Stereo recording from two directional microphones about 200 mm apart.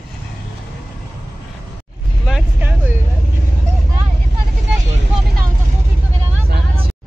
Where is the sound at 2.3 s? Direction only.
10° right (ahead or behind).